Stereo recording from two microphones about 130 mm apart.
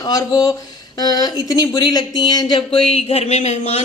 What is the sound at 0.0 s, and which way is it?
Speech, 30° left (ahead or behind).